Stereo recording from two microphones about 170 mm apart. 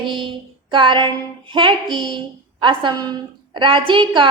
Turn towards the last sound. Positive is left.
turn(degrees=-30)  # may be behind; listen again after turning